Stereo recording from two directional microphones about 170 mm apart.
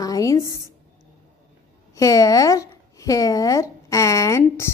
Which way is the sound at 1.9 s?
20° left (ahead or behind).